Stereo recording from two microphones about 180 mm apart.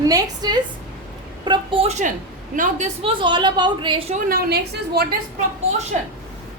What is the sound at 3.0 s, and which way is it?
A woman's voice, 30° right (ahead or behind).